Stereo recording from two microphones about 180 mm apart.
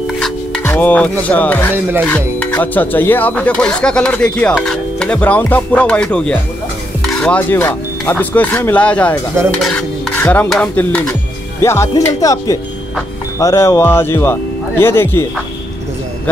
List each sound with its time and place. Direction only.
0.0 s music: 5° left (ahead or behind)
1.2 s speech: 10° left (ahead or behind)
9.6 s stir: centre (ahead or behind)
10.2 s dishes: 10° left (ahead or behind)
10.5 s speech: 5° left (ahead or behind)